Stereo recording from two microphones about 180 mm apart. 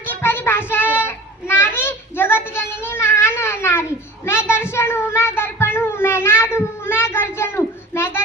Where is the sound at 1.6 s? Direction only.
15° left (ahead or behind).